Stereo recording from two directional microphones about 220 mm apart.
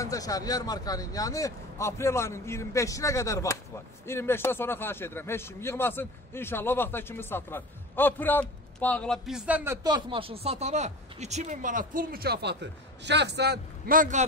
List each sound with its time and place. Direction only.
0.0 s a man's voice: 15° left (ahead or behind); by 9.8 s 5° right (ahead or behind)
9.8 s speech: 20° right (ahead or behind); by 14.2 s 35° right (ahead or behind)